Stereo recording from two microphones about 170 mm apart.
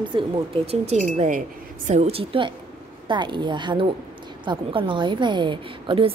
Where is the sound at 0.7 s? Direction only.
40° right (ahead or behind).